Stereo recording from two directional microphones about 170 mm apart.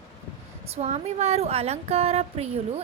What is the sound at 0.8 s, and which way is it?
A woman's voice, 40° right (ahead or behind).